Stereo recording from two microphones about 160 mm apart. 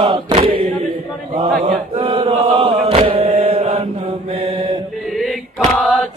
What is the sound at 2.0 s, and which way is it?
Chant, 30° right (ahead or behind).